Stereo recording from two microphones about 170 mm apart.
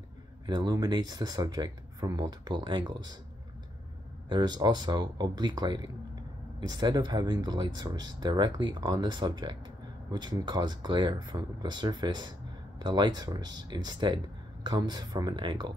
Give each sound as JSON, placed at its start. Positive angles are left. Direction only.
{"t": 0.5, "sound": "speech", "side_deg": -25}
{"t": 4.3, "sound": "speech", "side_deg": -25}